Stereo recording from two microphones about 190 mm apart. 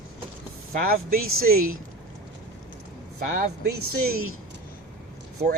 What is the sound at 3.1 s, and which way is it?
Speech, 55° right (ahead or behind).